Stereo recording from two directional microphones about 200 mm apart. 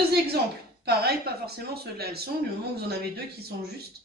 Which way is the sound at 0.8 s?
50° right (ahead or behind).